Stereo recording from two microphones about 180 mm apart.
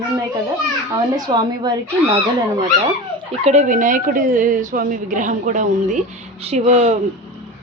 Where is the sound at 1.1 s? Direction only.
25° right (ahead or behind).